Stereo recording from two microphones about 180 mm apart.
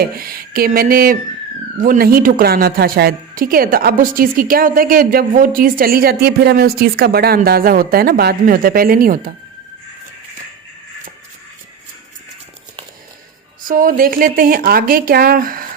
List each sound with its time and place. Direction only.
0.2 s a woman's voice: 55° right (ahead or behind)
13.7 s a woman's voice: 50° right (ahead or behind)